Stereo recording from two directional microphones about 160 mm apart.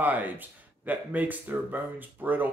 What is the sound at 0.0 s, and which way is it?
Speech, 10° right (ahead or behind).